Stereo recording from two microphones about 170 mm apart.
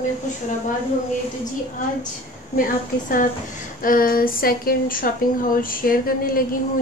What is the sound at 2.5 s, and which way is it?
A woman's voice, 55° left (ahead or behind).